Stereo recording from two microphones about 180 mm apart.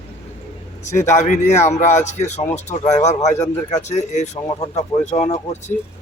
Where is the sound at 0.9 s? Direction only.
40° left (ahead or behind).